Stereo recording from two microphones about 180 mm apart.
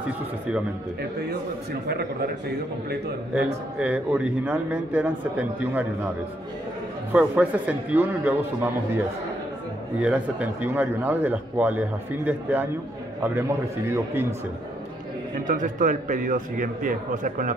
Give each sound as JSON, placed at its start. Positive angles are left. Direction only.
{"t": 3.7, "sound": "speech", "side_deg": -10}
{"t": 7.1, "sound": "speech", "side_deg": -10}
{"t": 9.9, "sound": "speech", "side_deg": -5}
{"t": 15.4, "sound": "speech", "side_deg": -45}